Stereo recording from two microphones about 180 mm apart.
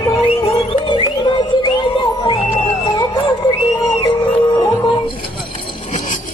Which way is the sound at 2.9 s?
25° left (ahead or behind).